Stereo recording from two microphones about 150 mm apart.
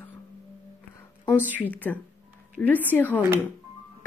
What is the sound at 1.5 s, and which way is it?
Speech, 10° left (ahead or behind).